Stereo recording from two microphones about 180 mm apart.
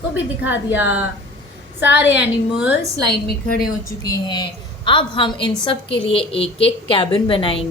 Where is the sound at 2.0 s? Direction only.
80° left.